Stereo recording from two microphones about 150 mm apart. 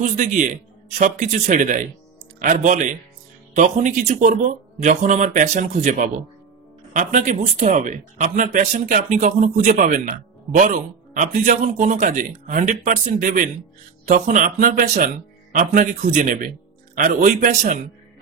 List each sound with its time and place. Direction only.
0.0 s speech: 55° right (ahead or behind); by 17.7 s 75° right (ahead or behind)